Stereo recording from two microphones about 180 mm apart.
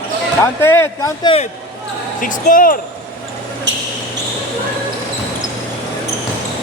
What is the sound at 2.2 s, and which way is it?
Speech, 50° left (ahead or behind).